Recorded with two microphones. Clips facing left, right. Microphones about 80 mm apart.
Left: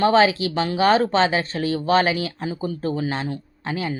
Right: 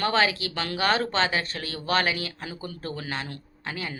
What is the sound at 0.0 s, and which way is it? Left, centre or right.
Speech, left.